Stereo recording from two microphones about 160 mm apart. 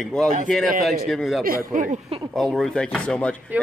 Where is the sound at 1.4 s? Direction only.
60° right (ahead or behind).